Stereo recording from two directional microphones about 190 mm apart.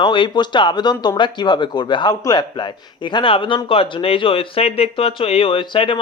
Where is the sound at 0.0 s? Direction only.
25° left (ahead or behind).